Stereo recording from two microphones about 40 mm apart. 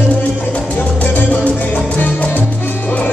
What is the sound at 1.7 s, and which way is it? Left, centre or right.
Music, left.